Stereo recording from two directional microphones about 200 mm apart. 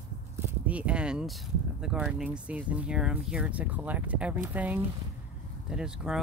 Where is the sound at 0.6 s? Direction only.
5° right (ahead or behind).